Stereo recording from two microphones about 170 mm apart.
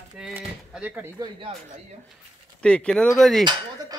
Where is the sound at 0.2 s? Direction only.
5° right (ahead or behind).